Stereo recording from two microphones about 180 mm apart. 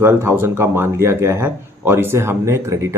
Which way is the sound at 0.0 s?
15° right (ahead or behind).